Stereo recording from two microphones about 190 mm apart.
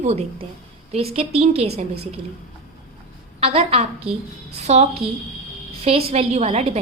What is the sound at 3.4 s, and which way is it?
A woman's voice, 30° right (ahead or behind).